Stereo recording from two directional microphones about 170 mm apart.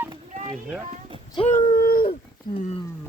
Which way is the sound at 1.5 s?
45° left (ahead or behind).